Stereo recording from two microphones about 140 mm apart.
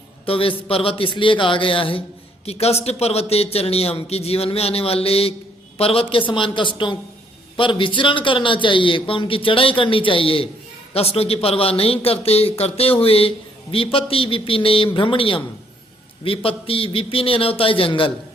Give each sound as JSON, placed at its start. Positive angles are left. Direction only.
{"t": 0.3, "sound": "a man's voice", "side_deg": 40}